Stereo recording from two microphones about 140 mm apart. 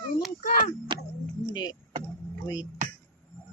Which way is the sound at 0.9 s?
35° right (ahead or behind).